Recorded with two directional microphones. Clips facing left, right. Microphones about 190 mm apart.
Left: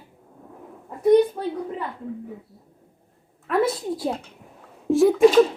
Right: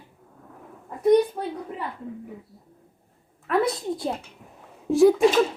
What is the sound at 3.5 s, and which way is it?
A child's voice, 5° left (ahead or behind).